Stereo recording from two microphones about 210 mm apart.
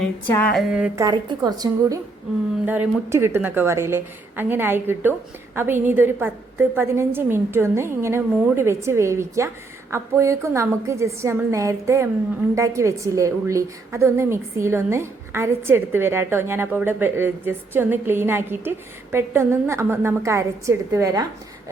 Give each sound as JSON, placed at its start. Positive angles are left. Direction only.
{"t": 0.0, "sound": "a sound", "side_deg": 10}
{"t": 0.5, "sound": "a woman's voice", "side_deg": -5}
{"t": 1.0, "sound": "a woman's voice", "side_deg": -20}